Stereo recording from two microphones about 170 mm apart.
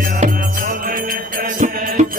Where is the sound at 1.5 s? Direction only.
55° right (ahead or behind).